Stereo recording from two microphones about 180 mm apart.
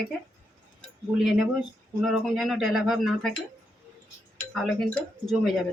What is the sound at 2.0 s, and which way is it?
Speech, centre (ahead or behind).